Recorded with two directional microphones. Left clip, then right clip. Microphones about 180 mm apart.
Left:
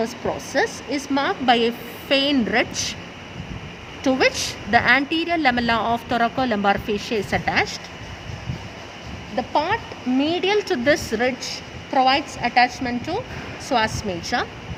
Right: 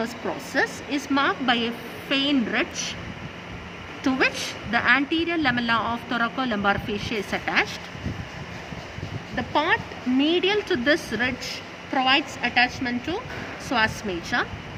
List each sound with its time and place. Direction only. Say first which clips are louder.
0.5 s a woman's voice: left 1 dB; 30° left (ahead or behind)
4.0 s a woman's voice: left 4 dB; 35° left (ahead or behind)
9.3 s speech: left 1 dB; 30° left (ahead or behind)